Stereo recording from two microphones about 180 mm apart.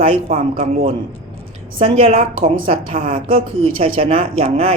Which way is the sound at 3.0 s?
50° right (ahead or behind).